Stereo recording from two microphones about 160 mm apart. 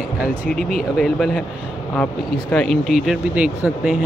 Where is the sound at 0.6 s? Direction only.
65° left (ahead or behind).